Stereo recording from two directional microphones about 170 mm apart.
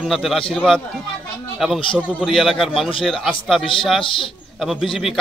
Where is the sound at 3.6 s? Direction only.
30° left (ahead or behind).